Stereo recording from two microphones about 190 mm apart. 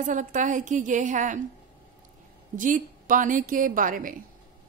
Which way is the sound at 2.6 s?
45° right (ahead or behind).